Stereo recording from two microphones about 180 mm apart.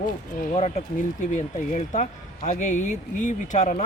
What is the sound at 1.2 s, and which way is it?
Speech, 45° left (ahead or behind).